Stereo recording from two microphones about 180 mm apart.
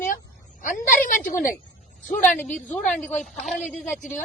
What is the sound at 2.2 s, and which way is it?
A woman's voice, 10° left (ahead or behind).